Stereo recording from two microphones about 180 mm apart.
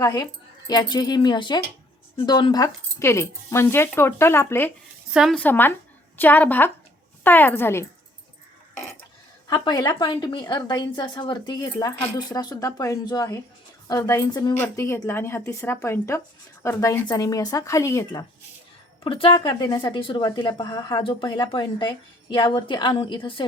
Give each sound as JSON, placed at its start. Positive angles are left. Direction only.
{"t": 0.0, "sound": "speech", "side_deg": 20}
{"t": 5.1, "sound": "speech", "side_deg": 0}
{"t": 5.4, "sound": "speech", "side_deg": 10}
{"t": 9.5, "sound": "speech", "side_deg": 20}
{"t": 19.0, "sound": "speech", "side_deg": 30}